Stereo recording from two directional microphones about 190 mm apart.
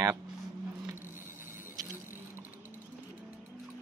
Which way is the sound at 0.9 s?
10° right (ahead or behind).